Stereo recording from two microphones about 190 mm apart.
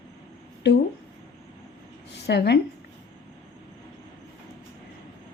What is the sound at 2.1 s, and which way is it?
Speech, 60° left (ahead or behind).